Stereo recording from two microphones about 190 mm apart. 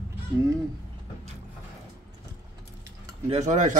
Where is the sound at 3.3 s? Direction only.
40° right (ahead or behind).